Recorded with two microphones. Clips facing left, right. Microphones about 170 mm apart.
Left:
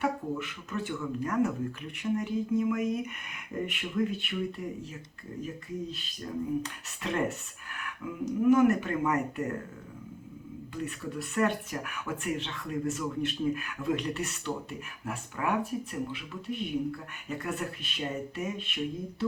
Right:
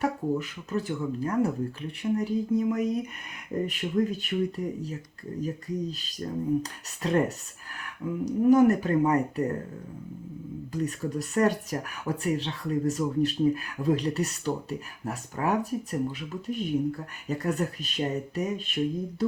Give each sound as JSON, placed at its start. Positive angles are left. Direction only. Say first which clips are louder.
{"t": 0.0, "sound": "speech", "louder": "right 4 dB", "side_deg": -35}
{"t": 10.7, "sound": "speech", "louder": "right 6 dB", "side_deg": -40}